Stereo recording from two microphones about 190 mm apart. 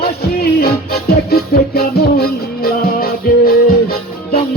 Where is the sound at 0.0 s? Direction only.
55° left (ahead or behind).